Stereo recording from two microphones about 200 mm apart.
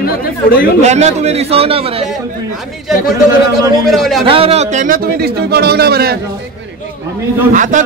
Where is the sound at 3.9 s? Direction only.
Centre (ahead or behind).